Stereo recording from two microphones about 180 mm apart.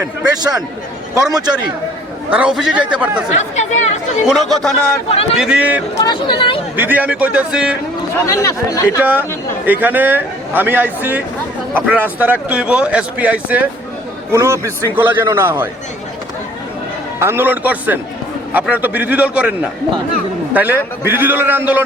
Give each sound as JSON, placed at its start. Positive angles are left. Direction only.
{"t": 1.1, "sound": "a man's voice", "side_deg": -20}
{"t": 2.3, "sound": "speech", "side_deg": -5}
{"t": 3.3, "sound": "speech", "side_deg": 40}
{"t": 4.3, "sound": "speech", "side_deg": 0}
{"t": 5.0, "sound": "speech", "side_deg": 30}
{"t": 5.4, "sound": "speech", "side_deg": -5}
{"t": 6.0, "sound": "speech", "side_deg": 25}
{"t": 6.7, "sound": "a man's voice", "side_deg": -10}
{"t": 8.2, "sound": "speech", "side_deg": 15}
{"t": 9.0, "sound": "a man's voice", "side_deg": -10}
{"t": 17.2, "sound": "a man's voice", "side_deg": -15}